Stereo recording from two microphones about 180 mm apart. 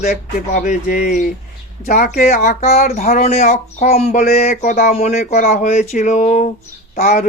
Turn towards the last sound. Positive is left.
turn(degrees=45)  # may be behind; listen again after turning